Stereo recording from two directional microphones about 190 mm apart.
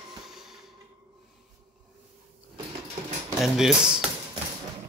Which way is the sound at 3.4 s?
5° right (ahead or behind).